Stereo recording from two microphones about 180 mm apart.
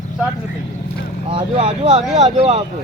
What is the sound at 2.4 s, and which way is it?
Speech, 30° right (ahead or behind).